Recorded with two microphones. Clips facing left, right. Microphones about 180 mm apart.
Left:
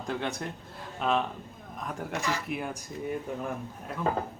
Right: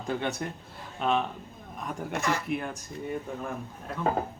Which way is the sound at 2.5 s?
5° left (ahead or behind).